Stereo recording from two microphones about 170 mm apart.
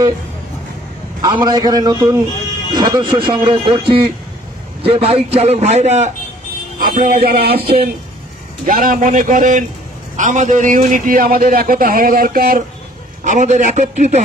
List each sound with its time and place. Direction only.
1.2 s speech: 25° right (ahead or behind)
4.8 s a man's voice: 35° right (ahead or behind)
6.8 s a man's voice: 55° right (ahead or behind)